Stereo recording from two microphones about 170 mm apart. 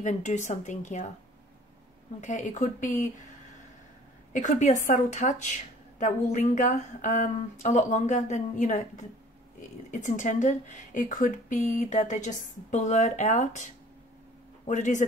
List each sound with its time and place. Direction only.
0.0 s speech: 45° left (ahead or behind)
2.2 s speech: 45° left (ahead or behind)
4.3 s speech: 45° left (ahead or behind)
14.7 s speech: 45° left (ahead or behind)